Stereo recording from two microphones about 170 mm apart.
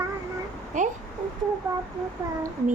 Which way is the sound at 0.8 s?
50° right (ahead or behind).